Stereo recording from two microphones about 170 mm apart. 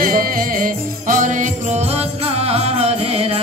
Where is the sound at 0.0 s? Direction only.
55° right (ahead or behind).